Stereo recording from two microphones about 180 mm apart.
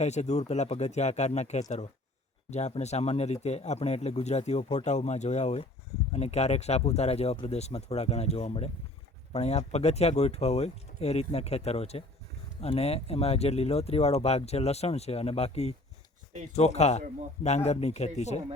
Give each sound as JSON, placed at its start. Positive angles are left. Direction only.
{"t": 0.0, "sound": "speech", "side_deg": 40}